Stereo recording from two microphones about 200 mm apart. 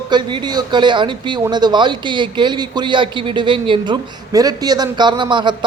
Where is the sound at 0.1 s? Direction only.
25° right (ahead or behind).